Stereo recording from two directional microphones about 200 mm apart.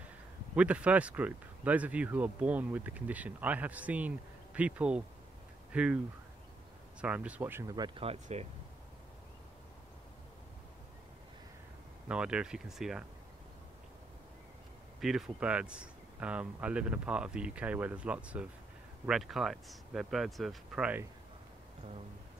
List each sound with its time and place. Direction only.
0.6 s speech: 5° right (ahead or behind)
7.0 s speech: 5° right (ahead or behind); by 8.5 s 30° right (ahead or behind)
12.1 s speech: 5° right (ahead or behind)
15.0 s speech: centre (ahead or behind)